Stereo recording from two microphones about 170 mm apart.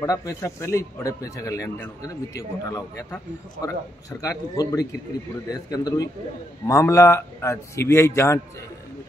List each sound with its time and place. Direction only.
0.0 s speech: 20° left (ahead or behind)
4.2 s a man's voice: 20° left (ahead or behind)